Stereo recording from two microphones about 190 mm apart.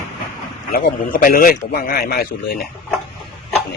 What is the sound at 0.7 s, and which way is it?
Speech, 50° left (ahead or behind).